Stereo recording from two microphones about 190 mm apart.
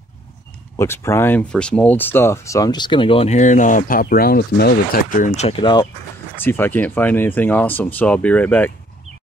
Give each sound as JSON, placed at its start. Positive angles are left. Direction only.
{"t": 0.7, "sound": "speech", "side_deg": 15}
{"t": 6.3, "sound": "speech", "side_deg": 10}